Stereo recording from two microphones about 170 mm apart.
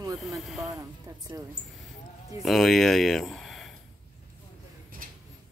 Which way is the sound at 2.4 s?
Centre (ahead or behind).